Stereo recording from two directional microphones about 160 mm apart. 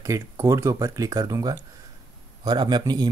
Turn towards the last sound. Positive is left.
turn(degrees=-25)  # may be behind; listen again after turning